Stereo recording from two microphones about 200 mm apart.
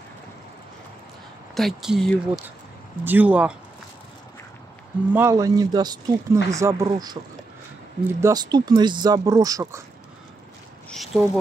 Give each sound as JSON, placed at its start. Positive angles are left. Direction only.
{"t": 1.5, "sound": "speech", "side_deg": 0}
{"t": 5.1, "sound": "speech", "side_deg": -15}
{"t": 8.2, "sound": "speech", "side_deg": -20}
{"t": 10.9, "sound": "speech", "side_deg": 0}